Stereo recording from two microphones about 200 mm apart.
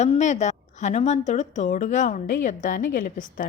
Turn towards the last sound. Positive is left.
turn(degrees=40)  # may be behind; listen again after turning